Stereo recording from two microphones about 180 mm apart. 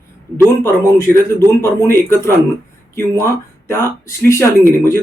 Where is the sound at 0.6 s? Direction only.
15° left (ahead or behind).